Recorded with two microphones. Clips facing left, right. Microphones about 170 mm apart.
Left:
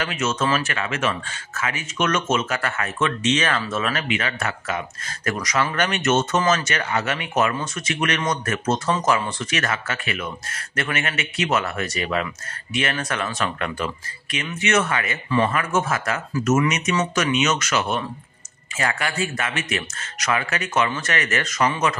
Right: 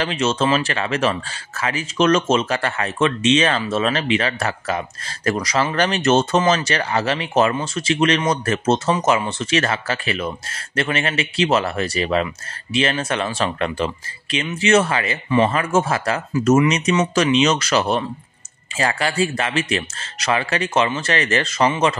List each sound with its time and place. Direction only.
0.0 s speech: 30° right (ahead or behind)